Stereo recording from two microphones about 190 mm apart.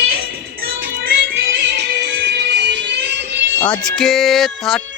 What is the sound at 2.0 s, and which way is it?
Music, 60° right (ahead or behind).